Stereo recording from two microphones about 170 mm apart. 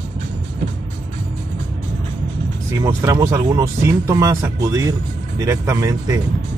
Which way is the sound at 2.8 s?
15° right (ahead or behind).